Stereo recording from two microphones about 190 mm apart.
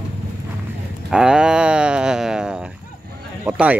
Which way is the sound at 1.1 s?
5° right (ahead or behind).